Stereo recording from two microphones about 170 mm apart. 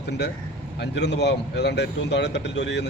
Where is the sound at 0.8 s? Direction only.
90° left.